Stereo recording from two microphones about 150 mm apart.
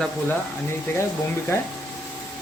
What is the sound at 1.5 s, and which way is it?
Speech, 15° left (ahead or behind).